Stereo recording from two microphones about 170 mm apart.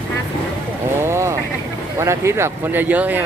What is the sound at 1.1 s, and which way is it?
Vehicle, 15° right (ahead or behind).